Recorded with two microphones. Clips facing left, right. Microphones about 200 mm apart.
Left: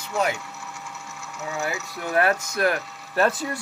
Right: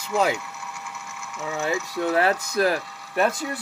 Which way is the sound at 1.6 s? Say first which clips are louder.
Right 7 dB; 25° right (ahead or behind).